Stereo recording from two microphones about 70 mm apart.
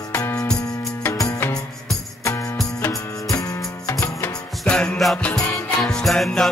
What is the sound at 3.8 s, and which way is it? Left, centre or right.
Music, left.